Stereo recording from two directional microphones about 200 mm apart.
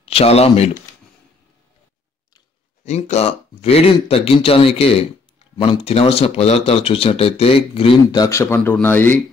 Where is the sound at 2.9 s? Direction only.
35° left (ahead or behind).